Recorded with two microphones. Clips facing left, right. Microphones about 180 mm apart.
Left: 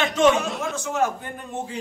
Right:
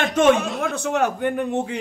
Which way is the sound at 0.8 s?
65° right (ahead or behind).